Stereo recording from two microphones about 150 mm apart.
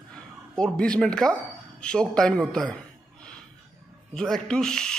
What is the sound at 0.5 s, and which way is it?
A man's voice, 5° left (ahead or behind).